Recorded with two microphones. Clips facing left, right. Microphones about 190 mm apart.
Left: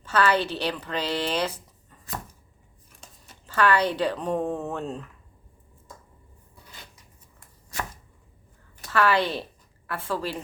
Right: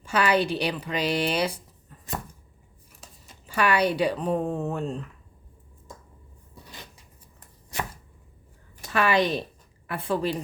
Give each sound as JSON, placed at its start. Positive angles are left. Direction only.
{"t": 0.0, "sound": "speech", "side_deg": -15}
{"t": 3.0, "sound": "speech", "side_deg": -10}
{"t": 8.8, "sound": "a woman's voice", "side_deg": -15}